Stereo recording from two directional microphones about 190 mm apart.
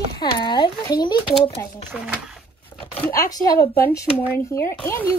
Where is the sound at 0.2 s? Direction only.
25° left (ahead or behind).